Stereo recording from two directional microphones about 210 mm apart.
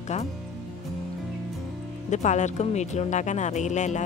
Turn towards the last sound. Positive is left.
turn(degrees=35)  # may be behind; listen again after turning